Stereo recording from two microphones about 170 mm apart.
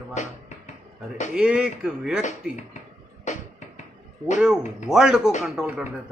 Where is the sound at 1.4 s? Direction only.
5° right (ahead or behind).